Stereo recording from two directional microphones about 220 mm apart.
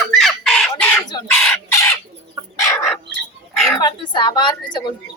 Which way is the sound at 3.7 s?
15° left (ahead or behind).